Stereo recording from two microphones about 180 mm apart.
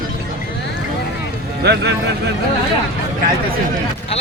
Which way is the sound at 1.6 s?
65° right (ahead or behind).